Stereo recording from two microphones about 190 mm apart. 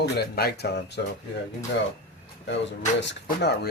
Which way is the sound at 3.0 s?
65° left (ahead or behind).